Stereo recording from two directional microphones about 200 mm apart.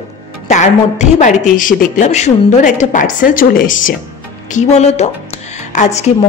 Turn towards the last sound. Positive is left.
turn(degrees=35)  # may be behind; listen again after turning